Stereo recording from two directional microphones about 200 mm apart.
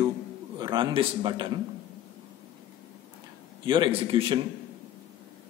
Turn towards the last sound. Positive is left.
turn(degrees=-30)  # may be behind; listen again after turning